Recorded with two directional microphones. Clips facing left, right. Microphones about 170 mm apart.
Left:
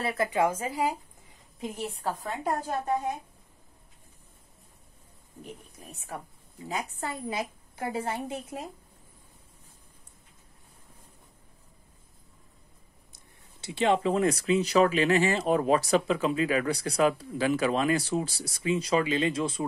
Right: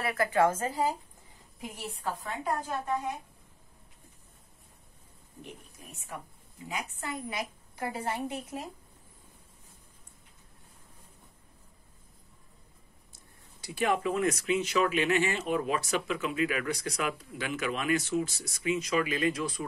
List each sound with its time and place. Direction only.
0.0 s speech: 25° left (ahead or behind)
2.0 s speech: 40° left (ahead or behind)
5.4 s a woman's voice: 35° left (ahead or behind)
13.1 s speech: 25° left (ahead or behind)